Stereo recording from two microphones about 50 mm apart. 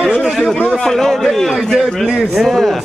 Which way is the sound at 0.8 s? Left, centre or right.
Centre.